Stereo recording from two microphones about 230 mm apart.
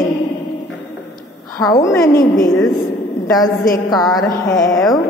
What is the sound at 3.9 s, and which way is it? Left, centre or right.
Music, centre.